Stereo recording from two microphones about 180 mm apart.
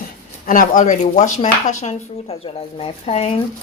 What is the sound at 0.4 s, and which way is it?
Speech, 50° left (ahead or behind).